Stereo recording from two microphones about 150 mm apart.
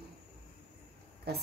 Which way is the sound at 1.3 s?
90° right.